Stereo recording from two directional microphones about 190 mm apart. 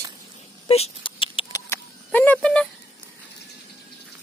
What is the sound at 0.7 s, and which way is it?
Rodents, 35° left (ahead or behind).